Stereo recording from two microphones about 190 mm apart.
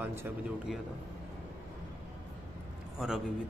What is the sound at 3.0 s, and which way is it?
Speech, centre (ahead or behind).